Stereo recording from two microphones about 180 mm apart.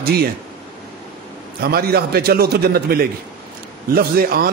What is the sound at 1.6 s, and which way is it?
Speech, 60° right (ahead or behind).